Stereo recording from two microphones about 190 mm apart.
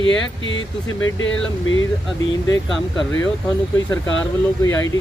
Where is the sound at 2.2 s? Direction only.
20° left (ahead or behind).